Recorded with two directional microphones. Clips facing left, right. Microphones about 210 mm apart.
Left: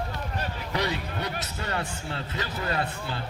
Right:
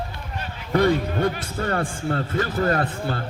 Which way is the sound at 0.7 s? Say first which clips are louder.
Right 11 dB; 50° right (ahead or behind).